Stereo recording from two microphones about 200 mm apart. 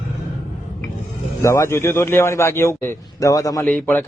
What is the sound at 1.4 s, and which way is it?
Speech, 15° left (ahead or behind).